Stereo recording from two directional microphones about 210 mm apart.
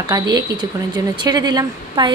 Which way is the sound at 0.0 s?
20° right (ahead or behind).